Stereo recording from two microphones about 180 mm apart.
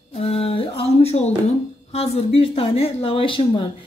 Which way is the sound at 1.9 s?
35° left (ahead or behind).